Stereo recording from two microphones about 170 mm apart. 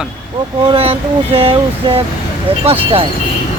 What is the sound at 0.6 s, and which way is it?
Speech, 30° right (ahead or behind).